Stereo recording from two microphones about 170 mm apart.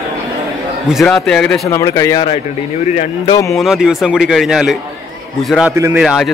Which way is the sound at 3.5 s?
Centre (ahead or behind).